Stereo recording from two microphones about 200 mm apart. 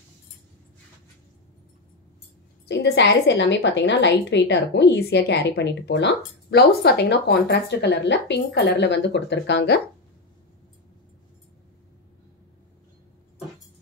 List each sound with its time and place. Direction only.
2.7 s a woman's voice: 60° left (ahead or behind)